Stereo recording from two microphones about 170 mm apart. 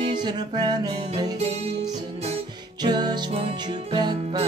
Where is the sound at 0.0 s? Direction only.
25° right (ahead or behind).